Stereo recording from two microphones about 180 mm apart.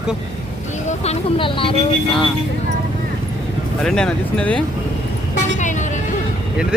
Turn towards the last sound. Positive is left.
turn(degrees=45)  # may be behind; listen again after turning